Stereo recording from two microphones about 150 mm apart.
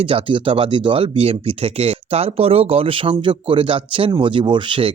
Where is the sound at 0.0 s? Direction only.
35° right (ahead or behind).